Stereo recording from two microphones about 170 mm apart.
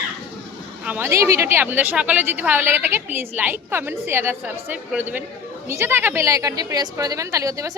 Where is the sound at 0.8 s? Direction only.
10° right (ahead or behind).